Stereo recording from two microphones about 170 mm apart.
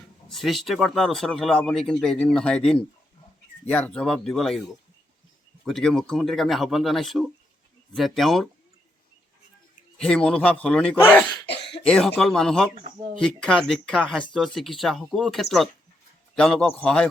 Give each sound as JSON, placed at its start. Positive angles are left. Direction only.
{"t": 0.3, "sound": "speech", "side_deg": 0}
{"t": 5.6, "sound": "speech", "side_deg": 0}
{"t": 10.0, "sound": "speech", "side_deg": 5}
{"t": 11.4, "sound": "cough", "side_deg": 90}
{"t": 11.9, "sound": "speech", "side_deg": 5}